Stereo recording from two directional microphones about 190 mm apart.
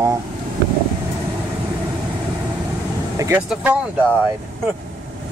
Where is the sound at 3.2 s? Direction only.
5° right (ahead or behind).